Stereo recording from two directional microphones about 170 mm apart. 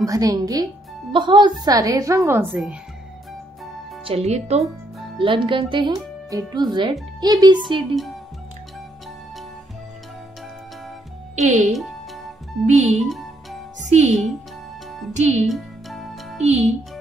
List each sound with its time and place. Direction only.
0.0 s a woman's voice: 20° right (ahead or behind)
4.0 s speech: 40° right (ahead or behind)
4.9 s music: centre (ahead or behind)
5.2 s a woman's voice: 30° right (ahead or behind)
7.9 s speech: centre (ahead or behind)
11.3 s speech: 45° right (ahead or behind)
13.0 s music: centre (ahead or behind)
13.8 s speech: 40° right (ahead or behind)
15.4 s music: centre (ahead or behind)
16.4 s speech: 40° right (ahead or behind)